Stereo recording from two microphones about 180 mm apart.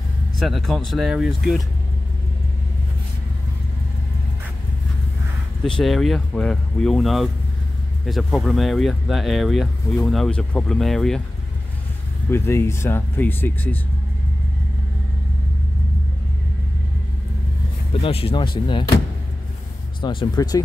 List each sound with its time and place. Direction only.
0.4 s speech: centre (ahead or behind)
5.7 s speech: centre (ahead or behind)
12.3 s speech: 15° left (ahead or behind)
18.0 s speech: 30° left (ahead or behind)
20.0 s speech: 25° left (ahead or behind)